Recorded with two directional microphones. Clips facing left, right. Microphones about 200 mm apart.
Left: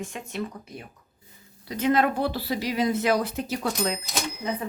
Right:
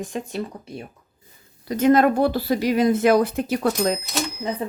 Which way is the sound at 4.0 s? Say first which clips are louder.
Right 4 dB; centre (ahead or behind).